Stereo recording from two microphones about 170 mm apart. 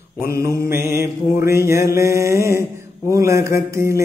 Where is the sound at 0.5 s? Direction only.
15° right (ahead or behind).